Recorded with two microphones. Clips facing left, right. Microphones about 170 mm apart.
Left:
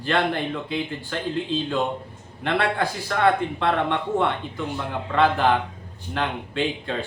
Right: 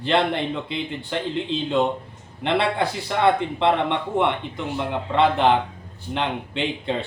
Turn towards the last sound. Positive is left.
turn(degrees=-25)  # may be behind; listen again after turning